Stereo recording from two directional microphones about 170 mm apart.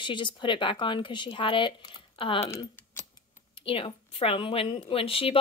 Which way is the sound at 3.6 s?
30° left (ahead or behind).